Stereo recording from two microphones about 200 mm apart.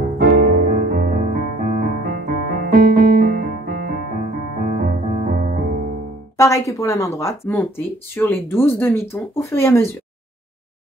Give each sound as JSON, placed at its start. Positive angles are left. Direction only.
{"t": 0.2, "sound": "music", "side_deg": -45}
{"t": 6.3, "sound": "speech", "side_deg": 15}